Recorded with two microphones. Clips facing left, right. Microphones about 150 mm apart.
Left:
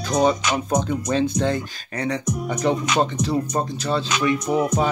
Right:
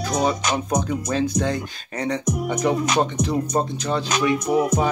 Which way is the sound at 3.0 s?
15° right (ahead or behind).